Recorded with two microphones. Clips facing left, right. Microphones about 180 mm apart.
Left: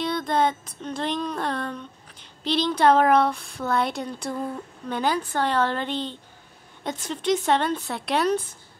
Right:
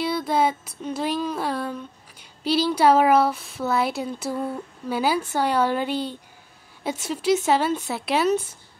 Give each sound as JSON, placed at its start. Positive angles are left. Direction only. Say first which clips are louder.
{"t": 0.0, "sound": "female singing", "louder": "right 1 dB", "side_deg": -5}
{"t": 2.4, "sound": "speech", "louder": "right 1 dB", "side_deg": -10}